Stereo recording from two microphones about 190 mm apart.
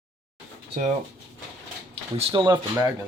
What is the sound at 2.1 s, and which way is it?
Speech, 25° right (ahead or behind).